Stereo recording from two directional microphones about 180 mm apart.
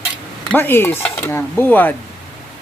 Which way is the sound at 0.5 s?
10° left (ahead or behind).